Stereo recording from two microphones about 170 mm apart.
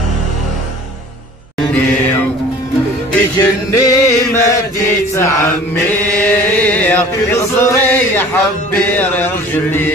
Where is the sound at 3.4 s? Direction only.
20° left (ahead or behind).